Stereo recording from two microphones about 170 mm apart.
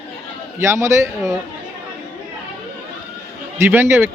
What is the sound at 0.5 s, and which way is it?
Speech, 15° right (ahead or behind).